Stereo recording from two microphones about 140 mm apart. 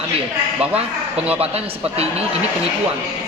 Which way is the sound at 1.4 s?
45° right (ahead or behind).